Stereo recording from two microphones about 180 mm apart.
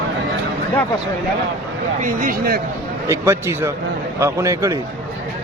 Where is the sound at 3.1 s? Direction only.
15° right (ahead or behind).